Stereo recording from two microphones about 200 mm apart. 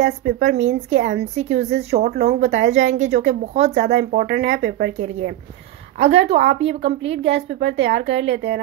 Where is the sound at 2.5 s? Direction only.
65° right (ahead or behind).